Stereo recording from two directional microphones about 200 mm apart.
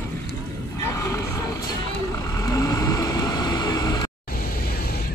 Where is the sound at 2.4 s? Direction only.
15° left (ahead or behind).